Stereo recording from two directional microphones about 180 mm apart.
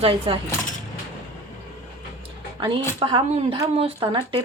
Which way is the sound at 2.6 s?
30° right (ahead or behind).